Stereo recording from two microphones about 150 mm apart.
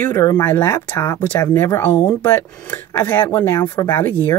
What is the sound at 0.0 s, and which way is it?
Speech, 15° left (ahead or behind).